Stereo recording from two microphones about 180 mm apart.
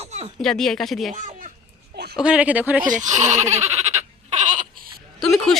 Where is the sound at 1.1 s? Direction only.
45° right (ahead or behind).